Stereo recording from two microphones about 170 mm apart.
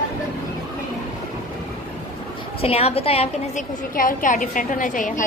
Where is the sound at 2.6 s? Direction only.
35° left (ahead or behind).